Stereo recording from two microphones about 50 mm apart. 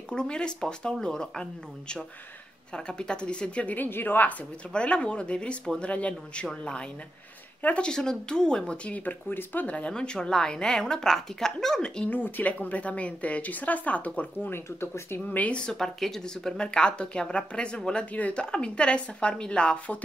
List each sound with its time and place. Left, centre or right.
0.1 s a woman's voice: centre; by 4.4 s left
4.7 s a woman's voice: left
7.9 s speech: centre
9.3 s a woman's voice: left
9.9 s speech: centre
12.1 s a woman's voice: left
14.5 s speech: left
15.1 s a woman's voice: left
15.6 s a woman's voice: centre